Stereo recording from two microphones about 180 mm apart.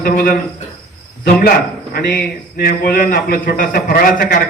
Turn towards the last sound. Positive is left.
turn(degrees=50)  # may be behind; listen again after turning